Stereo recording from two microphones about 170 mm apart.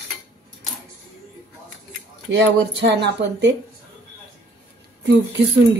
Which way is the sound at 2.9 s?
90° right.